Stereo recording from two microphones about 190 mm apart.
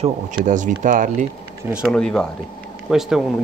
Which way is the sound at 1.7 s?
5° right (ahead or behind).